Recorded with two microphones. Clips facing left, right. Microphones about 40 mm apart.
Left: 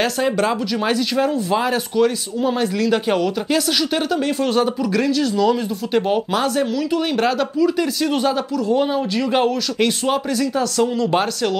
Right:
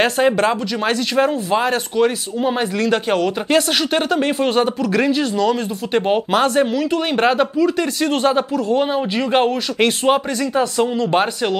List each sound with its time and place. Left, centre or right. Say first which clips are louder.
0.0 s speech: right 3 dB; right
3.4 s speech: right 2 dB; right